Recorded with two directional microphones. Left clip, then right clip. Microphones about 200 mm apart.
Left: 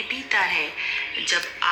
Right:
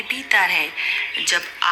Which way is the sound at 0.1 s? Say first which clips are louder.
Right 5 dB; 50° right (ahead or behind).